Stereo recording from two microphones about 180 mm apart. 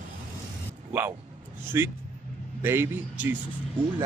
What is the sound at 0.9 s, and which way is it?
A man's voice, 10° right (ahead or behind).